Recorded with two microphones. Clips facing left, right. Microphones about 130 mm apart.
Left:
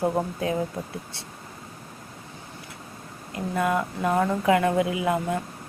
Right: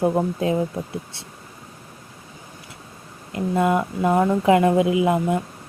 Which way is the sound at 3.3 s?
20° right (ahead or behind).